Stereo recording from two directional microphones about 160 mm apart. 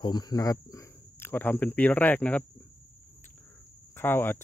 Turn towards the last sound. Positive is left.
turn(degrees=15)  # may be behind; listen again after turning